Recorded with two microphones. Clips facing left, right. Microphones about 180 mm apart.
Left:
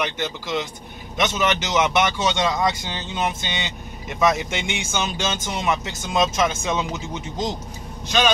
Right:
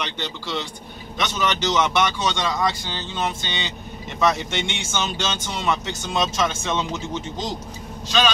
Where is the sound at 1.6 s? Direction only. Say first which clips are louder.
Right 2 dB; 15° left (ahead or behind).